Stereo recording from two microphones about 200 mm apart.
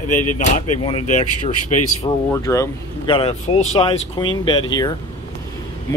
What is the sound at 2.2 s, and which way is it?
Speech, 15° left (ahead or behind).